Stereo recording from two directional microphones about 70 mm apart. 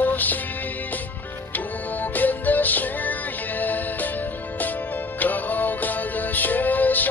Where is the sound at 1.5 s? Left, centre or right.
Left.